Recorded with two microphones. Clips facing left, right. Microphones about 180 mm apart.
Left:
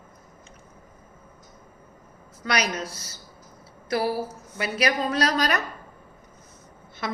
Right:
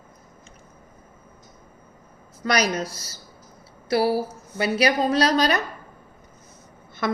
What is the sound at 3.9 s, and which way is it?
A woman's voice, 30° right (ahead or behind).